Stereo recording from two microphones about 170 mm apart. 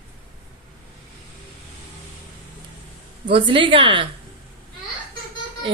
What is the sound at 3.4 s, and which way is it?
Speech, 30° right (ahead or behind).